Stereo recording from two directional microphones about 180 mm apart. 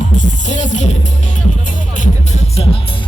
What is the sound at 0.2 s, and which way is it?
Speech, 40° left (ahead or behind).